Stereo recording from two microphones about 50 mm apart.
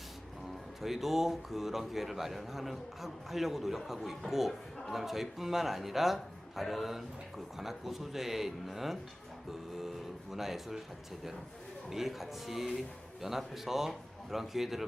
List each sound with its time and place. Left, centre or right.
0.8 s a man's voice: centre
11.9 s a man's voice: centre